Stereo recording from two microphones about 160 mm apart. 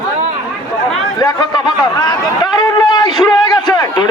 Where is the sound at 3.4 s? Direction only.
25° left (ahead or behind).